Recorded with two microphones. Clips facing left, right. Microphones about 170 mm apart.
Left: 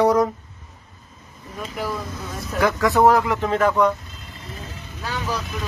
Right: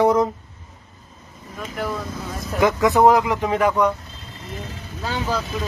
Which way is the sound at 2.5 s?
20° right (ahead or behind).